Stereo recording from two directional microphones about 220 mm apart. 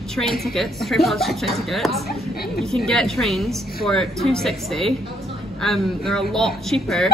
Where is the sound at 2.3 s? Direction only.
45° left (ahead or behind).